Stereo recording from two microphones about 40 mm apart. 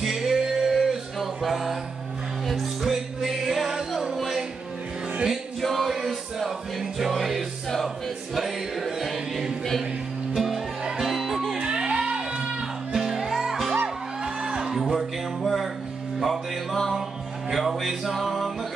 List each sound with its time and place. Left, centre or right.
0.0 s music: centre
5.6 s music: centre
11.5 s music: right
12.9 s music: centre
15.0 s music: centre